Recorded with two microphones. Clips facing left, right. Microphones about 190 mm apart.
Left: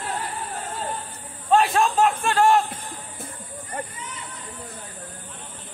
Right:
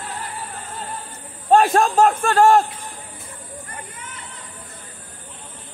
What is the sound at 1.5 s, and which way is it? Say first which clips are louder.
Speech: right 4 dB; 45° right (ahead or behind).